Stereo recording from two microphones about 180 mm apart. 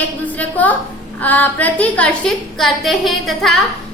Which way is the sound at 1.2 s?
10° left (ahead or behind).